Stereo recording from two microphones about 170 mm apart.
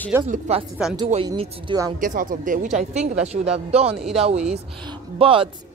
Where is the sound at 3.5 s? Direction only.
35° right (ahead or behind).